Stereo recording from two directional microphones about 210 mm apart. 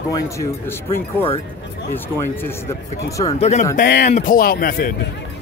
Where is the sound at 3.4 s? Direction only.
35° left (ahead or behind).